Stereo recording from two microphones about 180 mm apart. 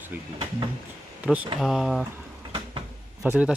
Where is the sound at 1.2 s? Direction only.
5° right (ahead or behind).